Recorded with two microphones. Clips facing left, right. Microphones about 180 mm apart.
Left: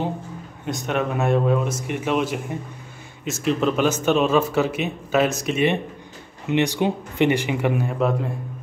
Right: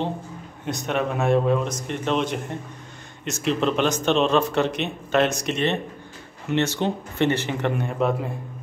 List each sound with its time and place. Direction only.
0.7 s speech: centre (ahead or behind)